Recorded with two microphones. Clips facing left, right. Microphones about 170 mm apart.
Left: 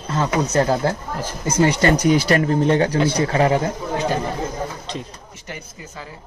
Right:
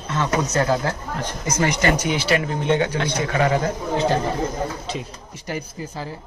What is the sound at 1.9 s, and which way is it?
Speech, 40° left (ahead or behind).